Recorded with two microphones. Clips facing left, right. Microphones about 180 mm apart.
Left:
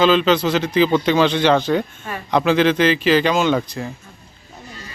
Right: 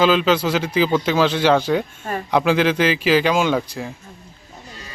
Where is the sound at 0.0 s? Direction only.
5° right (ahead or behind).